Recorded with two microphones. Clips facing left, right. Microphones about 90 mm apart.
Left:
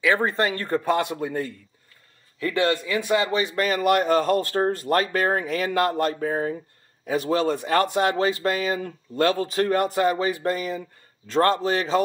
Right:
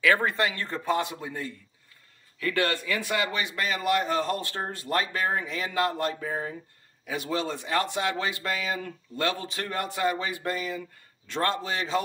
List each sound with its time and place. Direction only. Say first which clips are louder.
0.0 s speech: left 2 dB; 20° left (ahead or behind)
0.3 s speech: left 5 dB; 40° left (ahead or behind); by 1.5 s 55° left (ahead or behind)
2.4 s speech: left 4 dB; 20° left (ahead or behind)
3.6 s speech: left 5 dB; 50° left (ahead or behind)